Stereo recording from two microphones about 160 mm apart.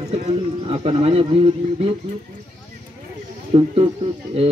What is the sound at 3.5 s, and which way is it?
Speech, 40° right (ahead or behind).